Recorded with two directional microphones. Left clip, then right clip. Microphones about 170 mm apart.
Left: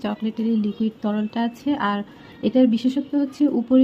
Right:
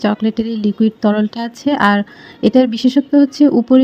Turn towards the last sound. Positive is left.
turn(degrees=-40)  # may be behind; listen again after turning